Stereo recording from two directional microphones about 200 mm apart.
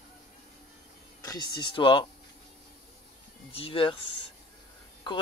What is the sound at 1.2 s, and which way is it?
Speech, 20° left (ahead or behind).